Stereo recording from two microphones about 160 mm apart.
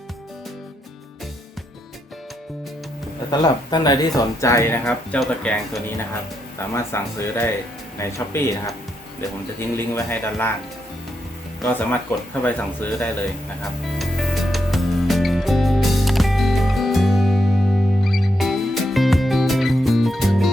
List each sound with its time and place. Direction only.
3.3 s speech: 25° left (ahead or behind)
4.9 s speech: 5° left (ahead or behind)
11.6 s speech: 10° left (ahead or behind)
14.0 s music: centre (ahead or behind)